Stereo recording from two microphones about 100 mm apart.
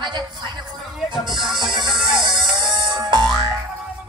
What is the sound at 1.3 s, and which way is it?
Music, centre (ahead or behind).